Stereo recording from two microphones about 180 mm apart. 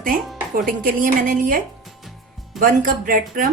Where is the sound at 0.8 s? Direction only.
50° right (ahead or behind).